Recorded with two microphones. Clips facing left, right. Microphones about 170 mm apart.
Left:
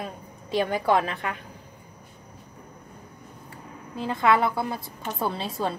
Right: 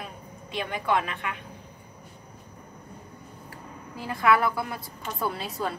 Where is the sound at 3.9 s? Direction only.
25° left (ahead or behind).